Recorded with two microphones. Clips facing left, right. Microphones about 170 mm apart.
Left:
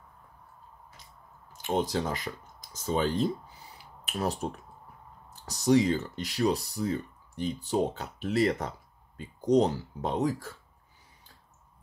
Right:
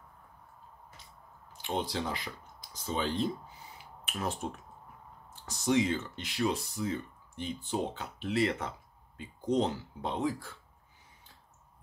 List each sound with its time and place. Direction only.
1.6 s speech: 45° left (ahead or behind)
3.7 s a sound: 35° left (ahead or behind)
5.3 s speech: 40° left (ahead or behind)